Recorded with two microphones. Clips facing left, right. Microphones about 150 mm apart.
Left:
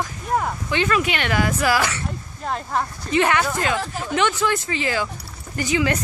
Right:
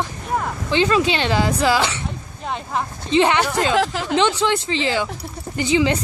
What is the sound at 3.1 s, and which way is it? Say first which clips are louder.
Speech: right 3 dB; 25° right (ahead or behind).